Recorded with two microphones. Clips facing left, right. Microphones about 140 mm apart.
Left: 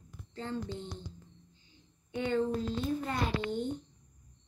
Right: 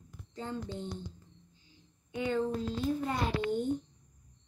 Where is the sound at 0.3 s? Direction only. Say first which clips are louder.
Left 1 dB; 15° right (ahead or behind).